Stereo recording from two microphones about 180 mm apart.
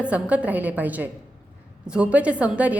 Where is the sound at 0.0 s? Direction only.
5° right (ahead or behind).